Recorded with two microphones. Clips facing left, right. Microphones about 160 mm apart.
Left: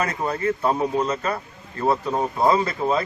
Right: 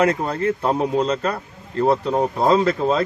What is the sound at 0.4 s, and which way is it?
A man's voice, 70° right (ahead or behind).